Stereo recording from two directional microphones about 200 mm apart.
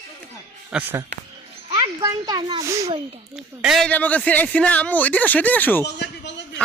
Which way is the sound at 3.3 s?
Centre (ahead or behind).